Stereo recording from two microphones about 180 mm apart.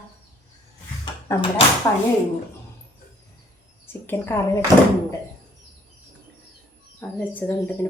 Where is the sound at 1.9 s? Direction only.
20° left (ahead or behind).